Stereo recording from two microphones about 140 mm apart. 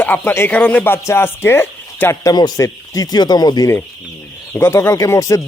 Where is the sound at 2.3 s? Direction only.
30° left (ahead or behind).